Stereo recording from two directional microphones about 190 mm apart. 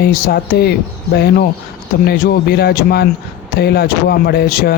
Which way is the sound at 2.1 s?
55° left (ahead or behind).